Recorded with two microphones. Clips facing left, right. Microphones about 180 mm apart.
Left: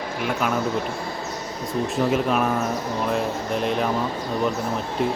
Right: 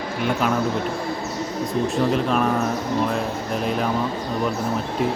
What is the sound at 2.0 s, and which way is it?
Speech, 5° left (ahead or behind).